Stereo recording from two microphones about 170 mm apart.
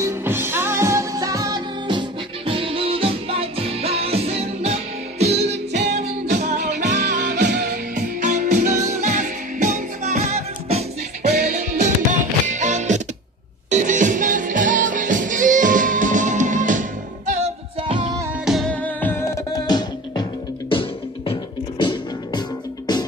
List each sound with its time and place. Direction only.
0.0 s music: 15° right (ahead or behind); by 7.2 s 45° right (ahead or behind)
7.3 s music: 75° right (ahead or behind)
7.9 s music: 45° right (ahead or behind)
17.3 s music: 35° right (ahead or behind)
18.4 s music: centre (ahead or behind); by 20.2 s 25° left (ahead or behind)
21.3 s music: 30° left (ahead or behind)